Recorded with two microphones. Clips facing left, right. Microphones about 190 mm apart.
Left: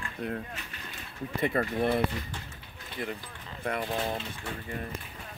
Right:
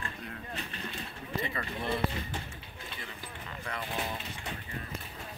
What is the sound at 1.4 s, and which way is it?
Speech, 50° left (ahead or behind).